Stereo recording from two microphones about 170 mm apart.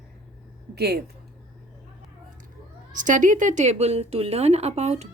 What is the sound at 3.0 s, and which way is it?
A woman's voice, 50° right (ahead or behind).